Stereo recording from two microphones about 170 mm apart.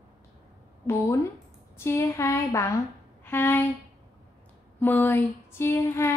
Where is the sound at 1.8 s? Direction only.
15° left (ahead or behind).